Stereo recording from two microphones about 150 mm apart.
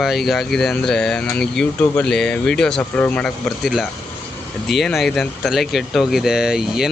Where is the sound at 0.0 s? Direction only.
Centre (ahead or behind).